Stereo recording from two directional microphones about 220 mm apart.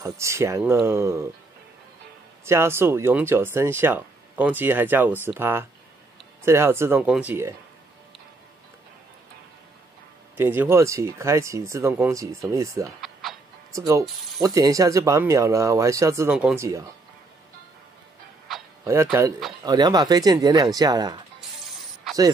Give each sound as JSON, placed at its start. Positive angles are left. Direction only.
{"t": 0.0, "sound": "speech", "side_deg": -15}
{"t": 2.4, "sound": "speech", "side_deg": -10}
{"t": 10.3, "sound": "speech", "side_deg": -10}
{"t": 13.0, "sound": "music", "side_deg": 0}
{"t": 13.7, "sound": "speech", "side_deg": -15}
{"t": 18.5, "sound": "a sound", "side_deg": 0}
{"t": 18.9, "sound": "speech", "side_deg": -10}
{"t": 21.4, "sound": "music", "side_deg": 0}